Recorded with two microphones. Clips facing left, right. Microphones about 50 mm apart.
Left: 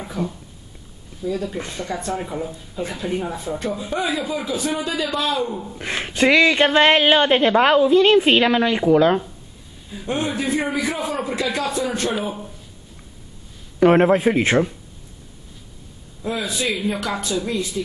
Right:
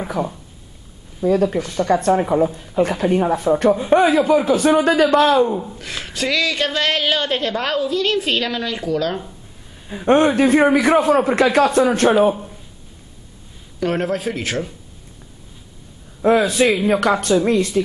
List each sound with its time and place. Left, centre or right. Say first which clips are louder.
0.2 s speech: right 2 dB; right
1.2 s speech: right 8 dB; right
5.4 s speech: right 7 dB; right
5.8 s a woman's voice: left 5 dB; left
9.8 s speech: right 10 dB; right
13.7 s a woman's voice: left 7 dB; left
16.2 s speech: right 10 dB; right